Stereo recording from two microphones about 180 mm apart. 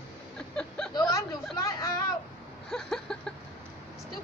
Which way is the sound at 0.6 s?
5° left (ahead or behind).